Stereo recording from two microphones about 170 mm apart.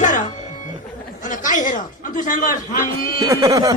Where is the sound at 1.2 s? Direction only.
50° left (ahead or behind).